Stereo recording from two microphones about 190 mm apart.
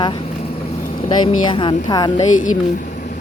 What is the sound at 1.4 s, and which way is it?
Speech, 25° left (ahead or behind).